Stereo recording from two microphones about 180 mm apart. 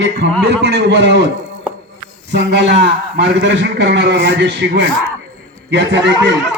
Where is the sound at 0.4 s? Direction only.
70° right (ahead or behind).